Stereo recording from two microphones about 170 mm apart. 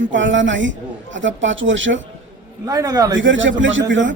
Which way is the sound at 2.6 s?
20° right (ahead or behind).